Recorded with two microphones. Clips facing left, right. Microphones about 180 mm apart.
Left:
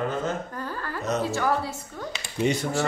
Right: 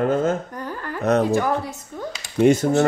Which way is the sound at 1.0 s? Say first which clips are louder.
Right 9 dB; 60° right (ahead or behind).